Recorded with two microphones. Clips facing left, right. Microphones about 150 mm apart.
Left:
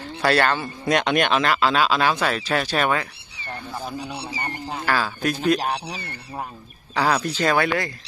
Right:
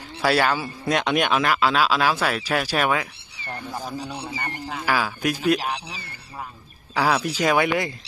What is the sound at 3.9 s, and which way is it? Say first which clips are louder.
Speech: even; 10° left (ahead or behind).